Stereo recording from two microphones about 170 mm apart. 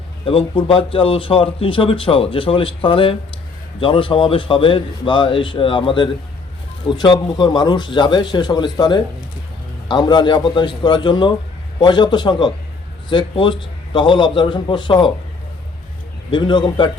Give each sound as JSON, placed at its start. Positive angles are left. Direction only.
{"t": 0.3, "sound": "speech", "side_deg": 30}
{"t": 16.3, "sound": "speech", "side_deg": 25}